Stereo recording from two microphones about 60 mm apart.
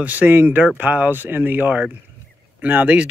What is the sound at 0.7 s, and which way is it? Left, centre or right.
Speech, right.